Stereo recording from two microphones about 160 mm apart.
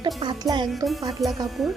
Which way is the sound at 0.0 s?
30° right (ahead or behind).